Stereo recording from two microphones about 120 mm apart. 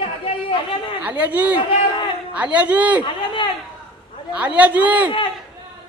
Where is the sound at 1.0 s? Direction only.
15° right (ahead or behind).